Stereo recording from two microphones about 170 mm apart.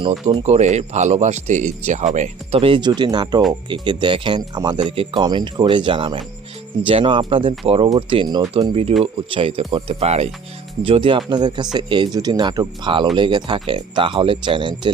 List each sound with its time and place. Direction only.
0.0 s speech: 30° right (ahead or behind)
0.4 s speech: 40° right (ahead or behind)